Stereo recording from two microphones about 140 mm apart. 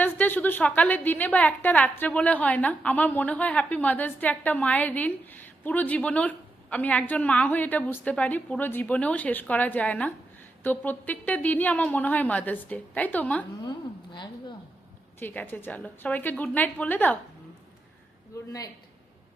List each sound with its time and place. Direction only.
0.0 s a woman's voice: 15° left (ahead or behind)
13.6 s a woman's voice: 30° left (ahead or behind)
15.2 s a woman's voice: 15° left (ahead or behind)